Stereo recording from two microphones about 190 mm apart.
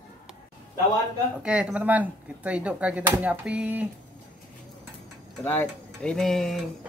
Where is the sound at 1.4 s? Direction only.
5° right (ahead or behind).